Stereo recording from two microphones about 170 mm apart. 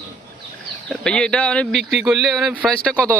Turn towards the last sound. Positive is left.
turn(degrees=10)  # may be behind; listen again after turning